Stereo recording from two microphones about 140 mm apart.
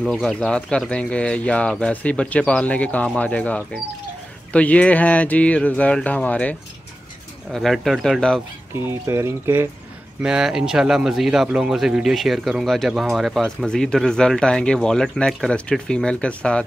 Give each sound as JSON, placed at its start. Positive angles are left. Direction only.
{"t": 0.0, "sound": "speech", "side_deg": 0}
{"t": 7.5, "sound": "a man's voice", "side_deg": 0}
{"t": 8.7, "sound": "speech", "side_deg": -15}
{"t": 10.2, "sound": "a man's voice", "side_deg": -5}